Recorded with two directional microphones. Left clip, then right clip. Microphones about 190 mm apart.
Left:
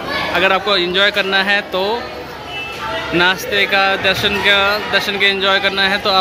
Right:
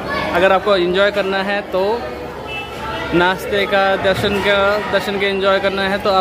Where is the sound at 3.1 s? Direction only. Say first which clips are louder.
Left 1 dB; 10° right (ahead or behind).